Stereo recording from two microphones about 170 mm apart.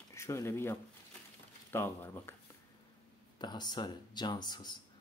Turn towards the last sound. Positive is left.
turn(degrees=25)  # may be behind; listen again after turning